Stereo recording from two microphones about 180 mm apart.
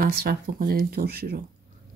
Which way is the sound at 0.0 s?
55° right (ahead or behind).